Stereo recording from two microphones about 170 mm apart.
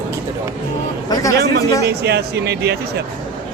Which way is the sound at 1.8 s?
75° right (ahead or behind).